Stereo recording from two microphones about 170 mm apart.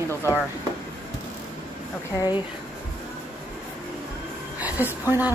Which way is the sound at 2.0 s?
20° left (ahead or behind).